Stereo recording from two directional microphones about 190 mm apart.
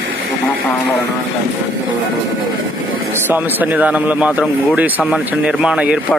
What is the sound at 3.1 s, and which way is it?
A man's voice, 10° right (ahead or behind).